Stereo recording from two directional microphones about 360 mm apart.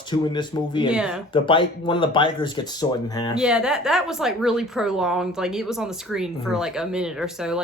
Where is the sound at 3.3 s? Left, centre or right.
Centre.